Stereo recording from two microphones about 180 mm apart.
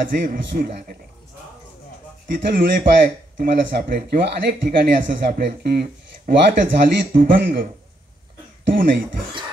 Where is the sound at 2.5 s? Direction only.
55° right (ahead or behind).